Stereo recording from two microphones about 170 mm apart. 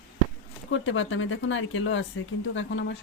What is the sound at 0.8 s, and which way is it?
Speech, 90° left.